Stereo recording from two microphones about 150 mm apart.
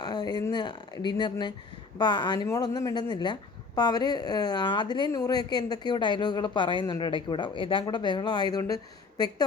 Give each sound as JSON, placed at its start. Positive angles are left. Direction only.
{"t": 0.0, "sound": "speech", "side_deg": 30}